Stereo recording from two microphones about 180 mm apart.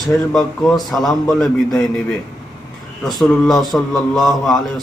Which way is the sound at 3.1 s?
Centre (ahead or behind).